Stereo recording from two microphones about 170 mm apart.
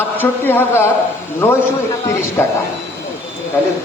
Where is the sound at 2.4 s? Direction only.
15° left (ahead or behind).